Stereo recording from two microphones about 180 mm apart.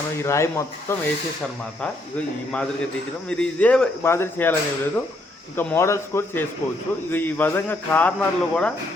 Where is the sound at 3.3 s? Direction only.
5° left (ahead or behind).